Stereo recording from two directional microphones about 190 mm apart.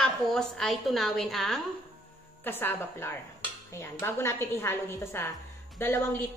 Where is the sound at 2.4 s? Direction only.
10° left (ahead or behind).